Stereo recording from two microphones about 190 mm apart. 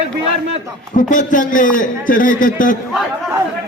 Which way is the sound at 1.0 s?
45° left (ahead or behind).